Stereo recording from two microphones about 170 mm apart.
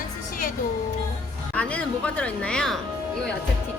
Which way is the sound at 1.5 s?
5° left (ahead or behind).